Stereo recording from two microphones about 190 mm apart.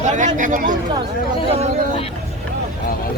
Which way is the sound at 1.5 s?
30° right (ahead or behind).